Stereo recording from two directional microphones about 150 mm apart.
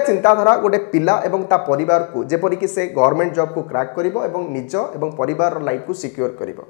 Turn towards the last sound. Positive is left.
turn(degrees=25)  # may be behind; listen again after turning